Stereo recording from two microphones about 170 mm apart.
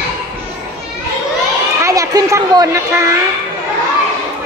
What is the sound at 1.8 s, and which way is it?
Speech, 20° right (ahead or behind).